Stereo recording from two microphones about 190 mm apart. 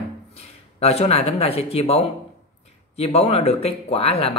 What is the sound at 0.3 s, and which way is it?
Speech, 30° left (ahead or behind).